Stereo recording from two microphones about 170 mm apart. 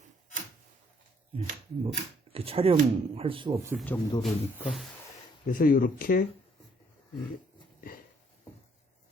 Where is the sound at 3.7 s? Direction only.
10° right (ahead or behind).